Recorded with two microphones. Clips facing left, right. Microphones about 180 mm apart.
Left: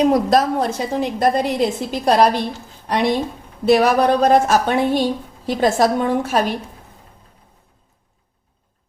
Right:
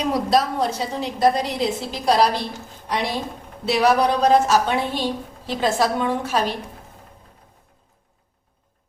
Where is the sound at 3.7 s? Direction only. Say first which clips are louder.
Left 4 dB; 50° left (ahead or behind).